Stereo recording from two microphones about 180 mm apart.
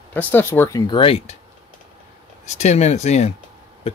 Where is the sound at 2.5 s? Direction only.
40° left (ahead or behind).